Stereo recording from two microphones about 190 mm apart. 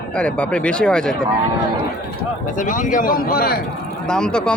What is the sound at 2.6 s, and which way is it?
Speech, 45° left (ahead or behind).